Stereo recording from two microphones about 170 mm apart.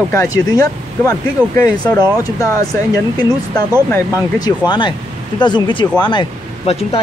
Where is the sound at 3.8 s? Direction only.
15° left (ahead or behind).